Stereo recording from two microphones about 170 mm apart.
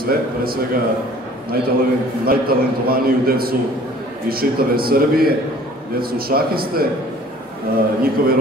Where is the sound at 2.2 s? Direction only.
60° right (ahead or behind).